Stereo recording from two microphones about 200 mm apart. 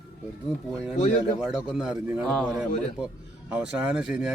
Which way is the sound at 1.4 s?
5° right (ahead or behind).